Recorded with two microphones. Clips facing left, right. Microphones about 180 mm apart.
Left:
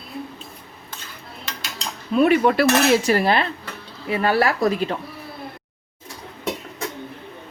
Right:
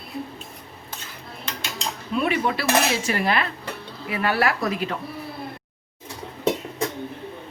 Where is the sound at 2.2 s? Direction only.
45° left (ahead or behind).